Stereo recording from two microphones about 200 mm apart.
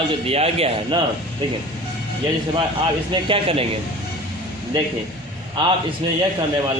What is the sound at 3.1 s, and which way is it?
Speech, 25° right (ahead or behind).